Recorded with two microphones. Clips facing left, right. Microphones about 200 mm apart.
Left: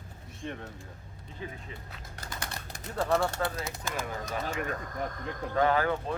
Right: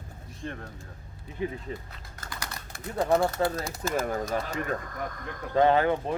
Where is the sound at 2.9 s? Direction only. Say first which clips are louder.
Right 4 dB; 15° right (ahead or behind).